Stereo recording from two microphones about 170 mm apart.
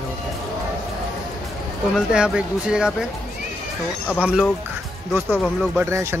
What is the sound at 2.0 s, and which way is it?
Speech, 5° right (ahead or behind).